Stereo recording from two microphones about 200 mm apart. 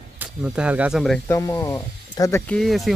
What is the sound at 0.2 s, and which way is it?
Speech, 5° right (ahead or behind).